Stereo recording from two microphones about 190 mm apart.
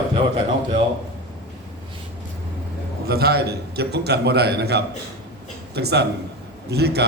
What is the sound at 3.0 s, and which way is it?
A man's voice, 55° right (ahead or behind).